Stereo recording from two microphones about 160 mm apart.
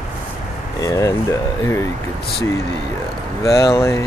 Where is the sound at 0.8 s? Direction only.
20° left (ahead or behind).